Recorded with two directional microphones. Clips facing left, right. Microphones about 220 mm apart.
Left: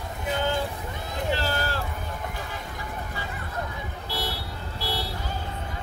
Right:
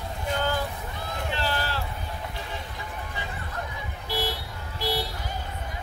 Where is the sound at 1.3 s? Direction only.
40° left (ahead or behind).